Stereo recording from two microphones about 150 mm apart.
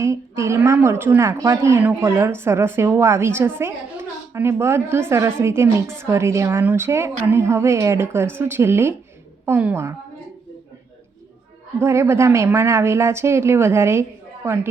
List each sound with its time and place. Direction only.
0.0 s a woman's voice: 20° right (ahead or behind)
11.8 s a woman's voice: 20° right (ahead or behind)